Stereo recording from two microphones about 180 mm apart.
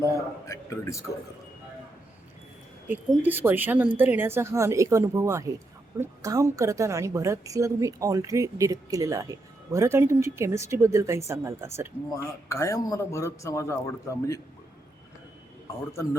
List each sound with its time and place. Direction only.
0.0 s a man's voice: 15° left (ahead or behind)
2.8 s a woman's voice: 10° right (ahead or behind)
12.1 s a man's voice: 15° left (ahead or behind)